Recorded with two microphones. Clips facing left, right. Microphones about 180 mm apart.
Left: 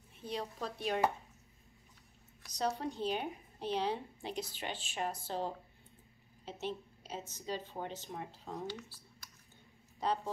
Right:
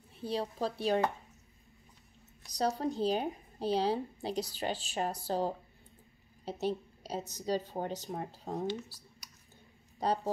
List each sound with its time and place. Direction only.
0.2 s a woman's voice: 30° right (ahead or behind)
2.4 s a woman's voice: 35° right (ahead or behind)